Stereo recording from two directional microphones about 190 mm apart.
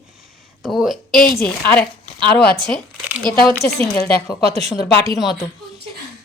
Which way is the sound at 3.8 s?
10° left (ahead or behind).